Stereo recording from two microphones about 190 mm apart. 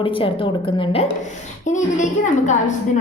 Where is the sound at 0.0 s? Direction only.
25° left (ahead or behind).